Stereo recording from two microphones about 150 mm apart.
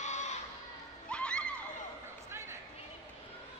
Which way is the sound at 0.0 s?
50° left (ahead or behind).